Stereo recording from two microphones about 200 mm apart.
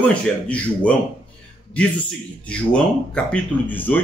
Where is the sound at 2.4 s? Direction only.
5° left (ahead or behind).